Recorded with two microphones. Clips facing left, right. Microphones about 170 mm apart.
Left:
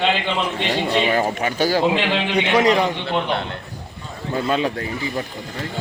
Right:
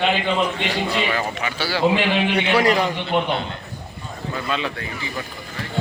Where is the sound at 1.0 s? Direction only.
40° left (ahead or behind).